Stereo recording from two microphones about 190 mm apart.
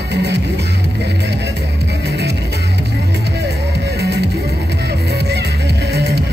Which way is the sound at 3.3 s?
60° right (ahead or behind).